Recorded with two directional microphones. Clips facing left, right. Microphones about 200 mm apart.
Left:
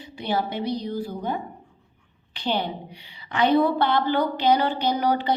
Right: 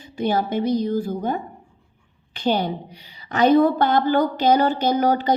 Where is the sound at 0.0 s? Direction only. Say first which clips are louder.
Right 4 dB; 45° right (ahead or behind).